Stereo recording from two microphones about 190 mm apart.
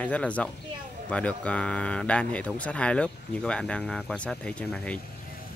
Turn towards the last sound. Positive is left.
turn(degrees=5)  # may be behind; listen again after turning